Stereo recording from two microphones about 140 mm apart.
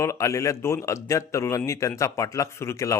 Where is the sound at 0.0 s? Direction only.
20° left (ahead or behind).